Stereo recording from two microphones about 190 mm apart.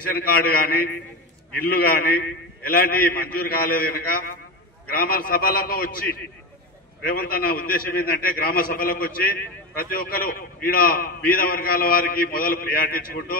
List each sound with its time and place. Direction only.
0.2 s a man's voice: 50° left (ahead or behind)